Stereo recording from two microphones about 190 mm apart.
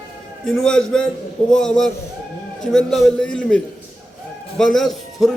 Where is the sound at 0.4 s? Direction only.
5° left (ahead or behind).